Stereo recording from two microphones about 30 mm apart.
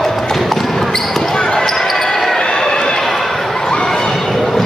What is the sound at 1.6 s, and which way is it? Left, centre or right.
Basketball bounce, centre.